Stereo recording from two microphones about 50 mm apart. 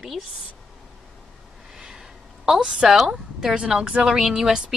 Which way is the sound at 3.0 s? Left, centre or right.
Centre.